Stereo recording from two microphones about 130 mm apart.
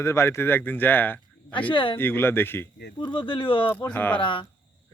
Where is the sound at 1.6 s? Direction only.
40° left (ahead or behind).